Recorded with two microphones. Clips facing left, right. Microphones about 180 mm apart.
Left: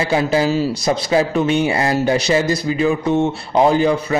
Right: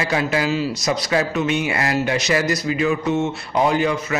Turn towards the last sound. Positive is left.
turn(degrees=30)  # may be behind; listen again after turning